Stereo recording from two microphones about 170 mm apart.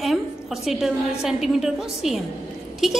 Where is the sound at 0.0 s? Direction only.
Centre (ahead or behind).